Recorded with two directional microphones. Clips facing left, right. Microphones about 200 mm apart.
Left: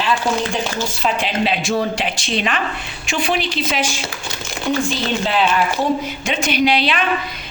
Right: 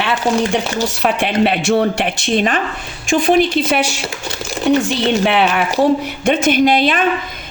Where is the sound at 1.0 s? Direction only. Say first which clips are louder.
Right 4 dB; 60° right (ahead or behind).